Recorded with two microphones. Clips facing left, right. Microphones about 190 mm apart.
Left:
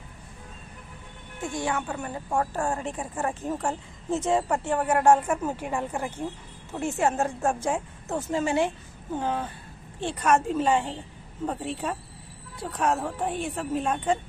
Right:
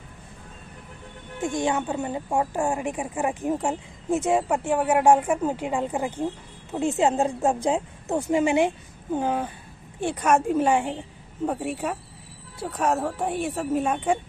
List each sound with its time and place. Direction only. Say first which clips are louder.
1.4 s a woman's voice: right 4 dB; 20° right (ahead or behind)